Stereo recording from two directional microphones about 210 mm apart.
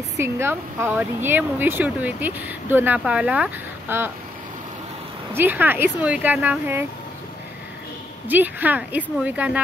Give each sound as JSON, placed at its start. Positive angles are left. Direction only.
{"t": 0.2, "sound": "speech", "side_deg": -10}
{"t": 5.3, "sound": "speech", "side_deg": -10}
{"t": 8.3, "sound": "speech", "side_deg": -10}